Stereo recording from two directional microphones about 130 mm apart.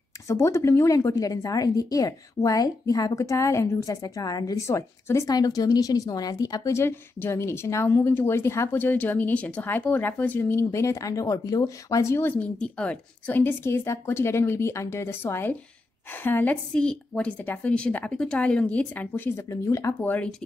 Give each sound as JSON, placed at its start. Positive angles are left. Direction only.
{"t": 0.3, "sound": "a woman's voice", "side_deg": 20}